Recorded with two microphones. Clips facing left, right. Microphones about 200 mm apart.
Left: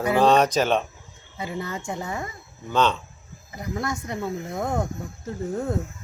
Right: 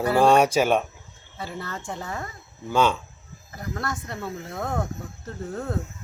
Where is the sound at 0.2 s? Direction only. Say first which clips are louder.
Right 1 dB; 10° right (ahead or behind).